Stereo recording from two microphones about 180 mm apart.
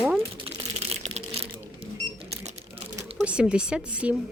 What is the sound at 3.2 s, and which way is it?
Speech, 5° right (ahead or behind).